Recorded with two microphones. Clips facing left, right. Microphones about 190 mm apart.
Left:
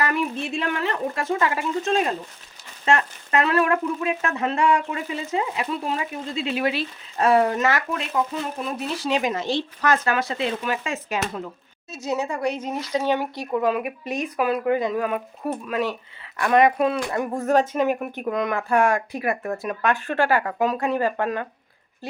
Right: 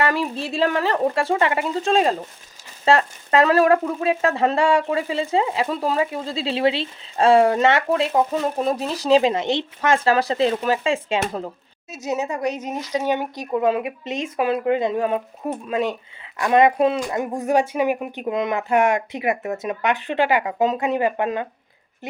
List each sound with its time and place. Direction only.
0.0 s speech: 30° right (ahead or behind)
12.0 s speech: 20° right (ahead or behind)